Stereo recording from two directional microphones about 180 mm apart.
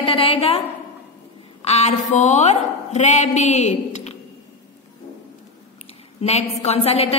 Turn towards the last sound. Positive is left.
turn(degrees=35)  # may be behind; listen again after turning